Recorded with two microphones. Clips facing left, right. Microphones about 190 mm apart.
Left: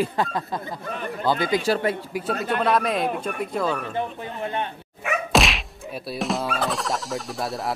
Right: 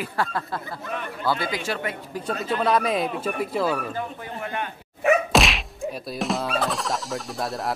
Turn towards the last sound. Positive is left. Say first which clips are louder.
# left 1 dB
turn(degrees=0)  # may be behind; listen again after turning